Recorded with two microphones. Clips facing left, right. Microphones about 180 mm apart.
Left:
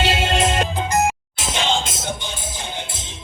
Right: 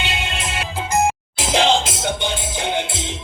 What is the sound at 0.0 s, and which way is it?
Music, 40° left (ahead or behind).